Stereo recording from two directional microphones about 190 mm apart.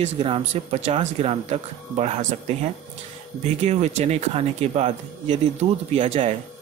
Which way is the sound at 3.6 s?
35° right (ahead or behind).